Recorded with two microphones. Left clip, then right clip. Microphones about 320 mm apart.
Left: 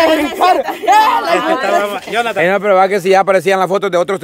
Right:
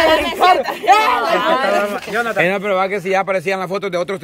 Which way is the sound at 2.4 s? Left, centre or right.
Centre.